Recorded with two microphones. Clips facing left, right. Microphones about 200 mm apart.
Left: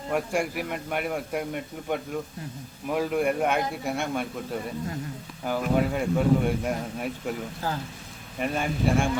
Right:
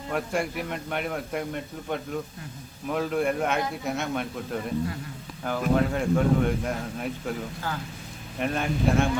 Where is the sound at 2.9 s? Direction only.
5° left (ahead or behind).